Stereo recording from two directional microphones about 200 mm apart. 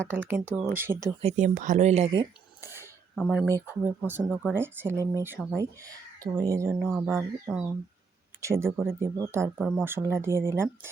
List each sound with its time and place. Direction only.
0.5 s speech: 10° right (ahead or behind)
1.2 s speech: 35° right (ahead or behind)
2.1 s a sound: 10° right (ahead or behind)
3.2 s speech: 5° right (ahead or behind)